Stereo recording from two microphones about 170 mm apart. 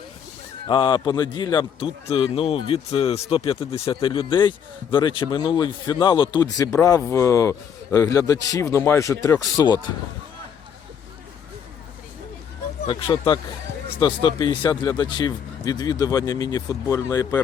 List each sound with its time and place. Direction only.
0.7 s a man's voice: 30° left (ahead or behind)
12.8 s a man's voice: 30° left (ahead or behind)